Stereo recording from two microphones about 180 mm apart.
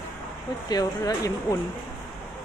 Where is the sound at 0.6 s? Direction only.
20° left (ahead or behind).